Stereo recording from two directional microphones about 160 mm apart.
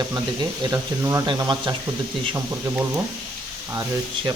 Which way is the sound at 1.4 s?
30° right (ahead or behind).